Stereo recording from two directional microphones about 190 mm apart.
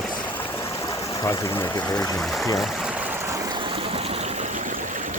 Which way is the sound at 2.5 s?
Centre (ahead or behind).